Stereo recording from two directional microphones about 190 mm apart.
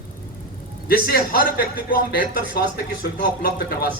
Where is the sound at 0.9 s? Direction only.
50° left (ahead or behind).